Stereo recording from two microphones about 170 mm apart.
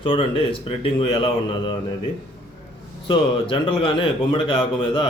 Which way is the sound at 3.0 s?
30° left (ahead or behind).